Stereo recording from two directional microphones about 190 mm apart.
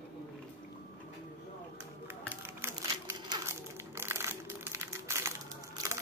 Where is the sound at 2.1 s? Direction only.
10° right (ahead or behind).